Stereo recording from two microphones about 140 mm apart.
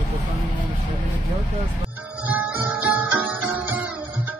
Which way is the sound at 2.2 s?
10° right (ahead or behind).